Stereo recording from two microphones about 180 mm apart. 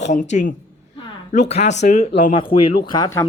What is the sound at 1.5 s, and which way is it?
Speech, 40° left (ahead or behind).